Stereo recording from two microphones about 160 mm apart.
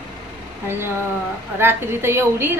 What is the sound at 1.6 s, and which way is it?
Speech, 15° right (ahead or behind).